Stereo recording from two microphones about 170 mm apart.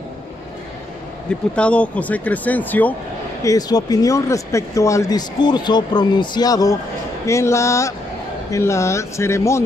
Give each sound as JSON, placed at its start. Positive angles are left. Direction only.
{"t": 1.5, "sound": "speech", "side_deg": 5}
{"t": 3.4, "sound": "speech", "side_deg": 20}